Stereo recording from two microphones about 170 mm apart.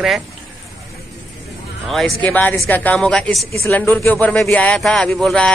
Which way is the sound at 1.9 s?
Centre (ahead or behind).